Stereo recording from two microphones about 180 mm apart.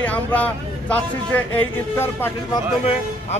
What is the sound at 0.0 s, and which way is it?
Speech, 10° left (ahead or behind).